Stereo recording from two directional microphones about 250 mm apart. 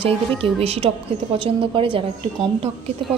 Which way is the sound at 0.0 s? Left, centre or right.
Right.